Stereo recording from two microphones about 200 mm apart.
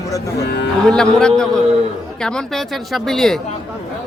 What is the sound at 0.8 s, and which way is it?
Speech, 5° left (ahead or behind).